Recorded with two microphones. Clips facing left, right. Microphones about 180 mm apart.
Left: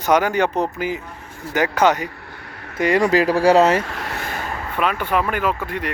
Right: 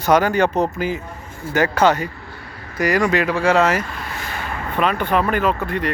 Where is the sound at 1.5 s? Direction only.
15° left (ahead or behind).